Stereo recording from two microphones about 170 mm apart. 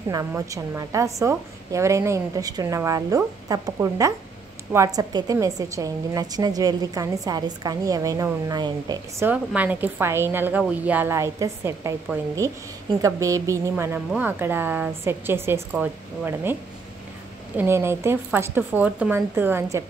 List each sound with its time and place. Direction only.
0.1 s a woman's voice: 20° right (ahead or behind)
9.2 s a woman's voice: 10° right (ahead or behind)
17.6 s a woman's voice: 15° right (ahead or behind)